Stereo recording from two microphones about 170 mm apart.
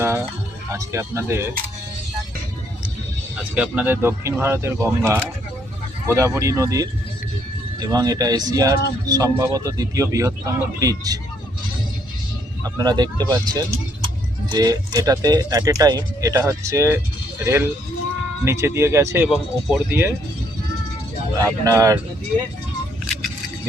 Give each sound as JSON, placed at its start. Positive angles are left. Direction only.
{"t": 0.0, "sound": "music", "side_deg": -15}
{"t": 0.7, "sound": "speech", "side_deg": -15}
{"t": 3.5, "sound": "speech", "side_deg": -10}
{"t": 12.6, "sound": "speech", "side_deg": -20}
{"t": 19.3, "sound": "speech", "side_deg": 0}
{"t": 19.9, "sound": "speech", "side_deg": -15}
{"t": 21.4, "sound": "speech", "side_deg": -20}